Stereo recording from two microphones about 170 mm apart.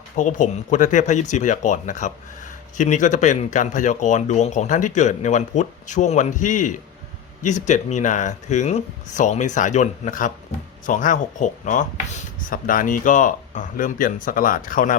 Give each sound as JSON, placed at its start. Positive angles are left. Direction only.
{"t": 0.2, "sound": "speech", "side_deg": 45}